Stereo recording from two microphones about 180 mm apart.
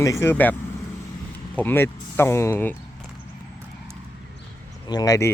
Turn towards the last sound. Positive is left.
turn(degrees=20)  # may be behind; listen again after turning